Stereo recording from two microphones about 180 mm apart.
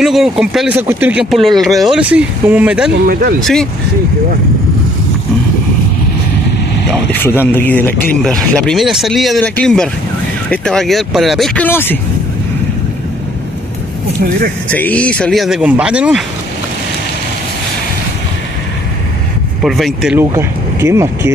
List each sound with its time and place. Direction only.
0.0 s speech: centre (ahead or behind)
2.9 s speech: 55° right (ahead or behind)
6.9 s speech: 10° left (ahead or behind)
14.7 s speech: 10° left (ahead or behind)
19.6 s speech: centre (ahead or behind)
20.3 s speech: 15° right (ahead or behind)